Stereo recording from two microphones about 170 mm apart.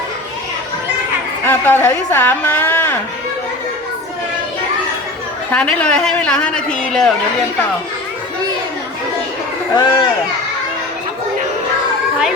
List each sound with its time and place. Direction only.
1.5 s a woman's voice: 10° left (ahead or behind)
5.5 s a man's voice: 5° left (ahead or behind)
9.7 s speech: 25° left (ahead or behind)